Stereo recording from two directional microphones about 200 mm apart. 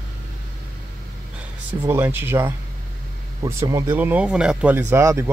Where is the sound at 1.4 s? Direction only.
10° right (ahead or behind).